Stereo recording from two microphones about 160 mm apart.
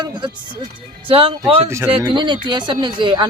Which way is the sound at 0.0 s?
30° right (ahead or behind).